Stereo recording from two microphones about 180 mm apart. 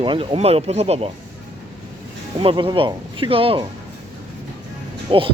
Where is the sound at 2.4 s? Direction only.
25° right (ahead or behind).